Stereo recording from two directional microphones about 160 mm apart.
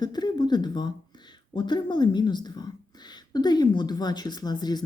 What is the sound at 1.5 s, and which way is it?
Speech, 30° left (ahead or behind).